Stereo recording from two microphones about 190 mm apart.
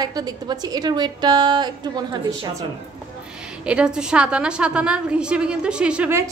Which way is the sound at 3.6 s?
5° right (ahead or behind).